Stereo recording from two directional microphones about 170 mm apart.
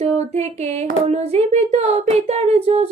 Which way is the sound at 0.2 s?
40° right (ahead or behind).